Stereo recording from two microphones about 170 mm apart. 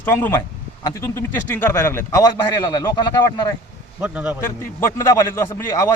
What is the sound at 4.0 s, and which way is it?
Speech, 10° right (ahead or behind).